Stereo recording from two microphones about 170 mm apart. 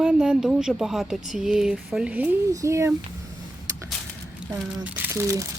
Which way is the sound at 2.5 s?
20° right (ahead or behind).